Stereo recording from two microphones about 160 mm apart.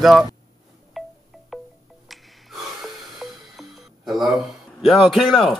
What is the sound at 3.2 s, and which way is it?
Music, centre (ahead or behind).